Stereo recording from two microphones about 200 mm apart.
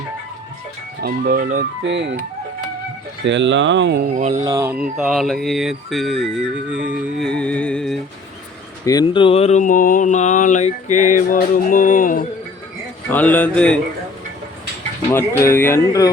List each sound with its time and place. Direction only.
1.0 s speech: 45° right (ahead or behind)
1.8 s speech: 65° right (ahead or behind)
3.2 s speech: 65° right (ahead or behind)
4.0 s speech: 35° right (ahead or behind)
4.4 s music: 15° right (ahead or behind); by 8.0 s centre (ahead or behind)
8.8 s speech: 20° left (ahead or behind); by 11.3 s 40° left (ahead or behind)
11.3 s a sound: 40° left (ahead or behind)
13.1 s speech: 10° left (ahead or behind)
15.4 s speech: 10° left (ahead or behind)